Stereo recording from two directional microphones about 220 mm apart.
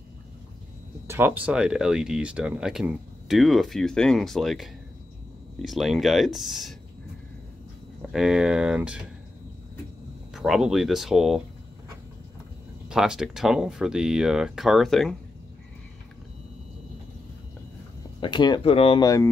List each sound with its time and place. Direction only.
1.0 s speech: 10° right (ahead or behind)
8.0 s speech: centre (ahead or behind)
10.3 s speech: centre (ahead or behind)
12.9 s speech: 5° right (ahead or behind)
18.2 s speech: 20° left (ahead or behind)